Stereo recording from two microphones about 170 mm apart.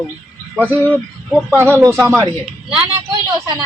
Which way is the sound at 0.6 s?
10° right (ahead or behind).